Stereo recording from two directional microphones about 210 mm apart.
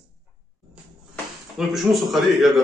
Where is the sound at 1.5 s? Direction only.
Centre (ahead or behind).